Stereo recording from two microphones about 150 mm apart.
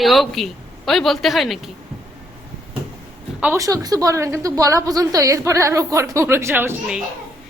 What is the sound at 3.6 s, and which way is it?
A woman's voice, 25° right (ahead or behind).